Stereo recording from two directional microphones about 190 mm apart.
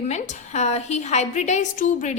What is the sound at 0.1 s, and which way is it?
A woman's voice, 35° left (ahead or behind).